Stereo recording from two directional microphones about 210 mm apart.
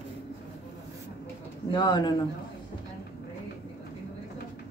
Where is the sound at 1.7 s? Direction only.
20° left (ahead or behind).